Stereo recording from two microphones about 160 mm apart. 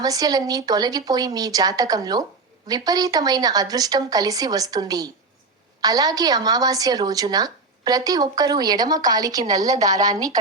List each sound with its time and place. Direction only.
0.0 s a woman's voice: 25° right (ahead or behind)